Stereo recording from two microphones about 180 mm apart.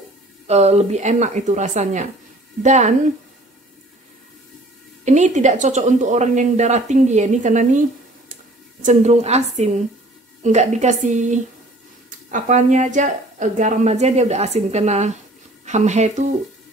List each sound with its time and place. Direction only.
0.5 s speech: 35° right (ahead or behind)
5.0 s speech: 40° right (ahead or behind)
8.8 s speech: 40° right (ahead or behind)